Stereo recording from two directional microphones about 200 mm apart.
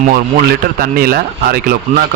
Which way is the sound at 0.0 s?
45° right (ahead or behind).